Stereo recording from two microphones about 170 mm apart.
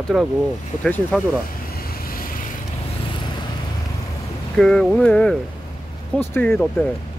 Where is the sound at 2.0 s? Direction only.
60° left (ahead or behind).